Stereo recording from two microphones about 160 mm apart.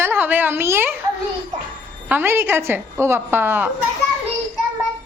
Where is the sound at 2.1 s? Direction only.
15° right (ahead or behind).